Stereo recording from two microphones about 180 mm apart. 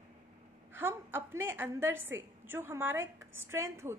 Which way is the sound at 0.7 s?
10° right (ahead or behind).